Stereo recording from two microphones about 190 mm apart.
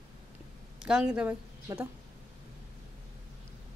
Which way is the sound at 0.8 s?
5° right (ahead or behind).